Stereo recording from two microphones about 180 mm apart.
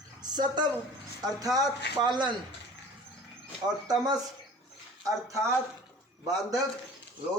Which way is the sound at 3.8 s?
20° right (ahead or behind).